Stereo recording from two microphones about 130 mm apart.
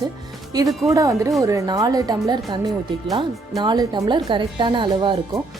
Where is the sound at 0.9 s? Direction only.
25° right (ahead or behind).